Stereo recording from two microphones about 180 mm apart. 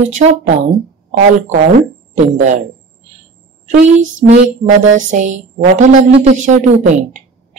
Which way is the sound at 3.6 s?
45° right (ahead or behind).